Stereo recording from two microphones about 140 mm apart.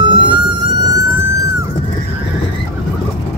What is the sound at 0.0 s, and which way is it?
Vehicle, 35° right (ahead or behind).